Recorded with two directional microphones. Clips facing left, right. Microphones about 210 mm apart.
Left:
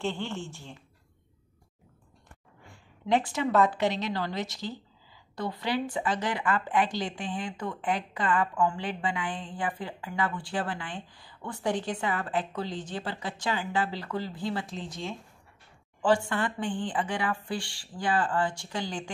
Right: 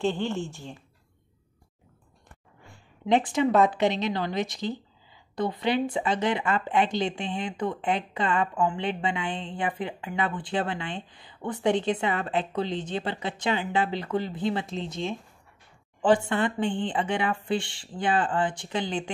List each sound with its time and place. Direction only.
0.0 s a woman's voice: 15° right (ahead or behind)
3.1 s speech: 20° right (ahead or behind)